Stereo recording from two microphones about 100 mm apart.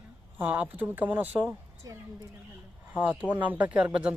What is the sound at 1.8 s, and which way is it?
Speech, 35° right (ahead or behind).